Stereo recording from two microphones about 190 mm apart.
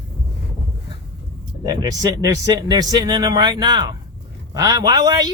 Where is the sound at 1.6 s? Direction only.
20° right (ahead or behind).